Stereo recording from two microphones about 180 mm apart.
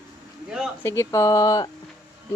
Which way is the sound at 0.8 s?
15° left (ahead or behind).